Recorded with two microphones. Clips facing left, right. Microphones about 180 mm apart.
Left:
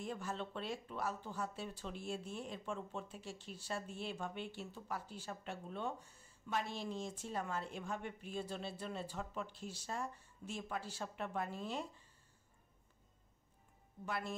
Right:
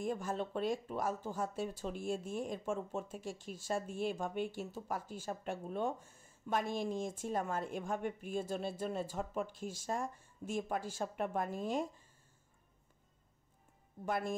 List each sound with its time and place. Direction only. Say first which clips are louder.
0.0 s speech: right 6 dB; 45° right (ahead or behind)
14.0 s speech: right 6 dB; 50° right (ahead or behind)